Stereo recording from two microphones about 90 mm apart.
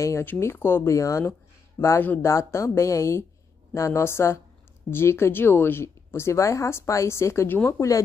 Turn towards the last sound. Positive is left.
turn(degrees=35)  # may be behind; listen again after turning